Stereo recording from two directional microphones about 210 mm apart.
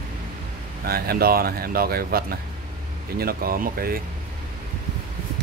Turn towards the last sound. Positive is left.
turn(degrees=-45)  # may be behind; listen again after turning